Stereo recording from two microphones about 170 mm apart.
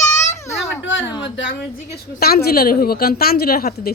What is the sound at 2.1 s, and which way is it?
A woman's voice, 65° left (ahead or behind).